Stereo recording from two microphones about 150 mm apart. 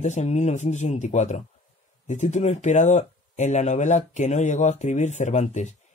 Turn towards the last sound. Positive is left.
turn(degrees=50)  # may be behind; listen again after turning